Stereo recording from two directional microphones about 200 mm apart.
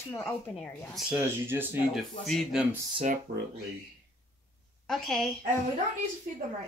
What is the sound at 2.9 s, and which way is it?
Speech, 40° right (ahead or behind).